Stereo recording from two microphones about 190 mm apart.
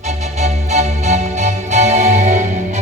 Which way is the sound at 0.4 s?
35° right (ahead or behind).